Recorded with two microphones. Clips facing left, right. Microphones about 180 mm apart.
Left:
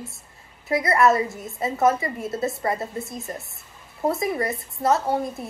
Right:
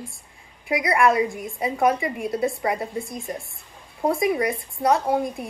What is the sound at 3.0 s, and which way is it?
Speech, 5° left (ahead or behind).